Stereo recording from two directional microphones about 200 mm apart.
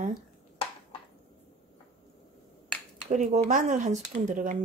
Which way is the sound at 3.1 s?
40° right (ahead or behind).